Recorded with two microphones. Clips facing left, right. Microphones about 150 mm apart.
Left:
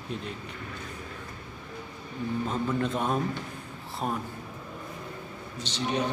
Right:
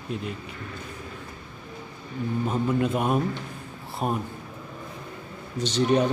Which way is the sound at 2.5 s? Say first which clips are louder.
Right 6 dB; 10° right (ahead or behind).